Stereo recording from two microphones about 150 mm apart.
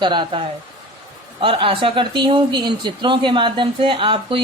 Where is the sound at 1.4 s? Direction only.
35° right (ahead or behind).